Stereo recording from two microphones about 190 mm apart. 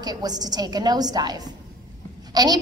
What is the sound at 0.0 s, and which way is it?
A woman's voice, 20° right (ahead or behind).